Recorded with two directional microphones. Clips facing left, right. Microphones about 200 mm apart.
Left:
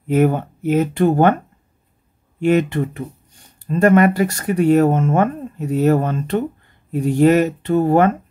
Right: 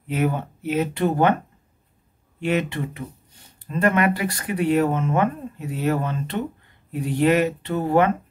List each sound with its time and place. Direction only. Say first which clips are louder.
0.0 s speech: left 8 dB; 45° left (ahead or behind)
2.4 s speech: left 7 dB; 50° left (ahead or behind)